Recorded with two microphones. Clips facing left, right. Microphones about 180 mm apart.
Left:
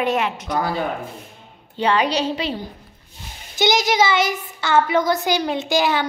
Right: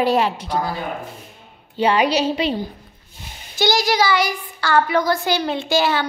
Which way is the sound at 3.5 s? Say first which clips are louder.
Even; 20° left (ahead or behind).